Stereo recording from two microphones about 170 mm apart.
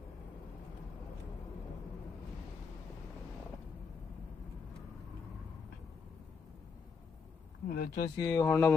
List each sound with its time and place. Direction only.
7.7 s speech: 60° left (ahead or behind)
8.1 s speech: 20° left (ahead or behind)